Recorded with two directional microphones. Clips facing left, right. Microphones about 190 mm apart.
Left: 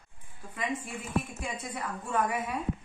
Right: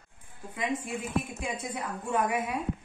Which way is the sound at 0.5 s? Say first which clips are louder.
Right 3 dB; 15° right (ahead or behind).